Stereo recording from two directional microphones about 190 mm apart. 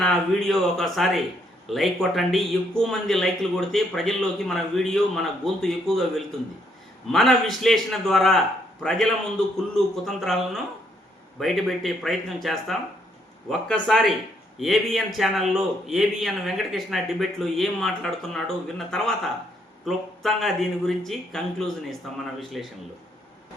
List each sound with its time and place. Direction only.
0.0 s a man's voice: centre (ahead or behind)